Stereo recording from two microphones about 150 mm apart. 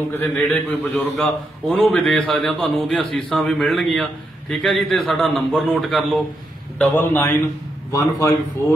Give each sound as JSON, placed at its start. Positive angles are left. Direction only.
{"t": 0.1, "sound": "a man's voice", "side_deg": 10}
{"t": 6.9, "sound": "a man's voice", "side_deg": 15}